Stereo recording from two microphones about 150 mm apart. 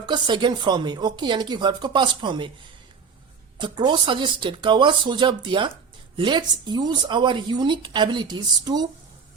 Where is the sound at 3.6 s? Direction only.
30° right (ahead or behind).